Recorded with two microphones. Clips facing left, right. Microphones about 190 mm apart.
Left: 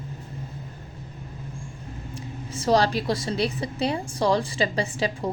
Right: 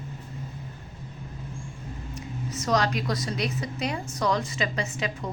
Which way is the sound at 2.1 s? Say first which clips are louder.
Right 1 dB; 30° left (ahead or behind).